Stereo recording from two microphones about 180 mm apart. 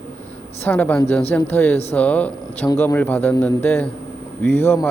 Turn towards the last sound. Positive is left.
turn(degrees=15)  # may be behind; listen again after turning